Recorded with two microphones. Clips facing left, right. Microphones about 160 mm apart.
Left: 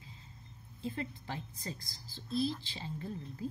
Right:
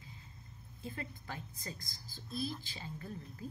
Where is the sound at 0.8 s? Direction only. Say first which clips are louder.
Left 6 dB; 25° left (ahead or behind).